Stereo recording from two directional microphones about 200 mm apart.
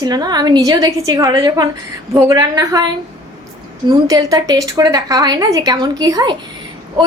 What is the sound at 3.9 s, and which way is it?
A woman's voice, 20° right (ahead or behind).